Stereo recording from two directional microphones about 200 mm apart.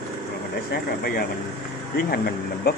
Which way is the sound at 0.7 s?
50° left (ahead or behind).